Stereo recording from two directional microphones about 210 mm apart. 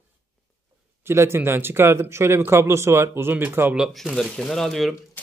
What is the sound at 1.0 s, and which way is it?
Speech, 10° right (ahead or behind).